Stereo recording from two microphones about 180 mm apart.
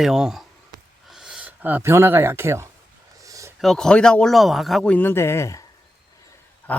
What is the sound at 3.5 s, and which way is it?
Speech, centre (ahead or behind).